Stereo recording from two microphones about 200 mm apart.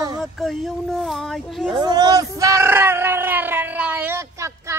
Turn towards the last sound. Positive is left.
turn(degrees=-15)  # may be behind; listen again after turning